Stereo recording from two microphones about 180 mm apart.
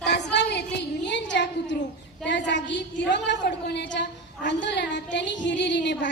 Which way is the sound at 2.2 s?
75° left (ahead or behind).